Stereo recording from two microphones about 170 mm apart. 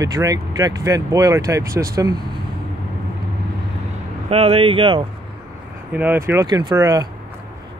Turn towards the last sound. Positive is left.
turn(degrees=-20)  # may be behind; listen again after turning